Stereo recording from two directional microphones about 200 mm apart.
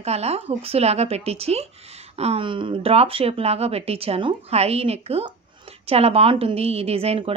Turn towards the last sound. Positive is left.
turn(degrees=-30)  # may be behind; listen again after turning